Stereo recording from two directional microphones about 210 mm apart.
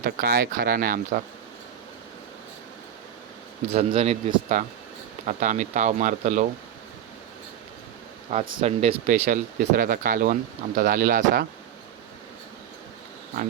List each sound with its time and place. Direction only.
0.0 s speech: 45° right (ahead or behind)
3.7 s speech: 30° right (ahead or behind)
8.3 s speech: 30° right (ahead or behind)